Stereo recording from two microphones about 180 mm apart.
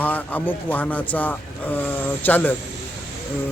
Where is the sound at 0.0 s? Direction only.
10° left (ahead or behind).